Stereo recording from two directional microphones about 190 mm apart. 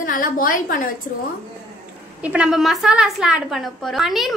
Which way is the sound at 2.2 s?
5° right (ahead or behind).